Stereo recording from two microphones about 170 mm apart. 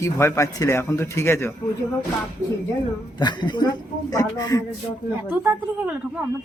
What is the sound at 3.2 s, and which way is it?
Speech, 25° left (ahead or behind).